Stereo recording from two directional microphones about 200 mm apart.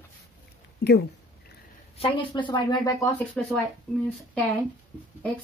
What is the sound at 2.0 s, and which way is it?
Speech, 25° left (ahead or behind).